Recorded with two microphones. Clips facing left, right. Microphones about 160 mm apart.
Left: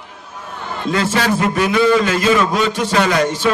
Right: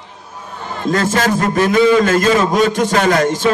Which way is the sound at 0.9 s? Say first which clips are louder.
Right 2 dB; 45° right (ahead or behind).